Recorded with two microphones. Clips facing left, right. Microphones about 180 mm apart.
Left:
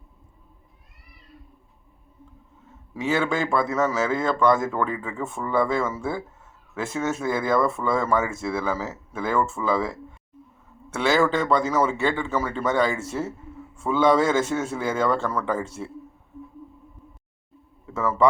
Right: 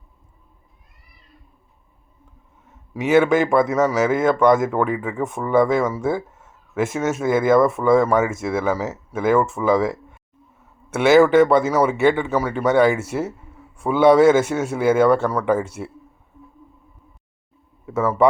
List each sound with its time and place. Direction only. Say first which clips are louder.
2.9 s a man's voice: right 8 dB; 20° right (ahead or behind)
17.9 s speech: right 4 dB; 20° right (ahead or behind)